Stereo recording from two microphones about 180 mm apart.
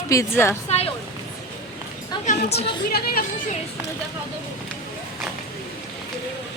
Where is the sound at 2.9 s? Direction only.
55° left (ahead or behind).